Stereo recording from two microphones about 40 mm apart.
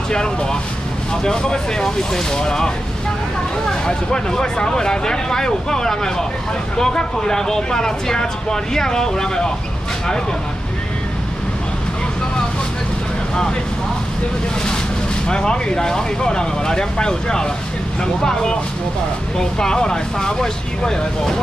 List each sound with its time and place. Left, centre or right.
0.1 s speech: centre
15.2 s speech: left